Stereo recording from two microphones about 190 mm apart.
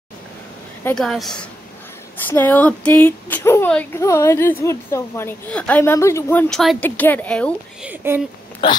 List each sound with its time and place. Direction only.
0.8 s a woman's voice: centre (ahead or behind)
6.5 s speech: centre (ahead or behind)
7.8 s speech: 10° right (ahead or behind)
8.6 s speech: 25° left (ahead or behind)